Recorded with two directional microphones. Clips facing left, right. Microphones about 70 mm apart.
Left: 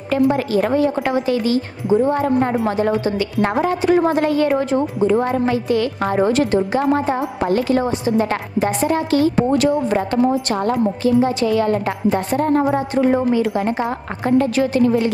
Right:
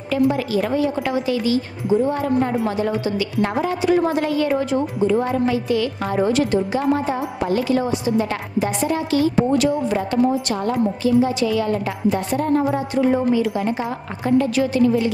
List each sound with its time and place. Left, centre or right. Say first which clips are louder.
0.1 s a woman's voice: left 2 dB; left